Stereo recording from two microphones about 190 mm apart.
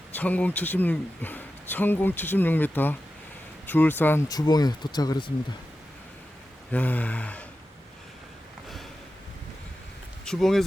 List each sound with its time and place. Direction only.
0.1 s a man's voice: 10° left (ahead or behind)
6.7 s a man's voice: 10° left (ahead or behind)
10.2 s speech: centre (ahead or behind)